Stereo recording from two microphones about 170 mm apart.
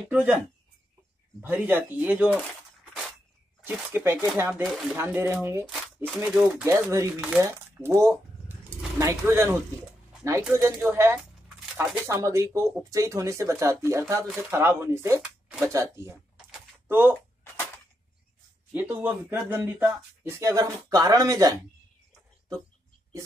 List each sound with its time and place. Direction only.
0.1 s speech: 10° right (ahead or behind)
1.4 s speech: 10° right (ahead or behind)
2.3 s a sound: centre (ahead or behind)
3.6 s speech: 15° right (ahead or behind)
4.6 s speech: centre (ahead or behind)
4.9 s speech: 15° right (ahead or behind)
5.7 s shuffling cards: centre (ahead or behind)
6.4 s speech: 15° right (ahead or behind)
18.7 s speech: 10° right (ahead or behind)